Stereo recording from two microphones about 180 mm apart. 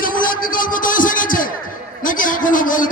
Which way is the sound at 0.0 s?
50° left (ahead or behind).